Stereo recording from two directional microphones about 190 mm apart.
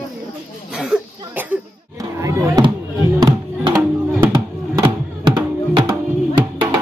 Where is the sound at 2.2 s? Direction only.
15° right (ahead or behind).